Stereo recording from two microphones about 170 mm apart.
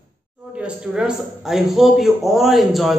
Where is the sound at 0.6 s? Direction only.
5° right (ahead or behind).